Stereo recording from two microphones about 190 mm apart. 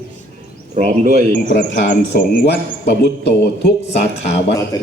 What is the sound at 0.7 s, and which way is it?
Speech, 40° right (ahead or behind).